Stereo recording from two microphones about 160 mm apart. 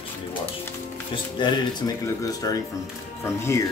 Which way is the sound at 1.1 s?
30° left (ahead or behind).